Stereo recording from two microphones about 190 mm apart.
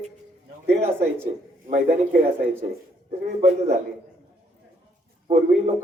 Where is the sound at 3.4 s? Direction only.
35° right (ahead or behind).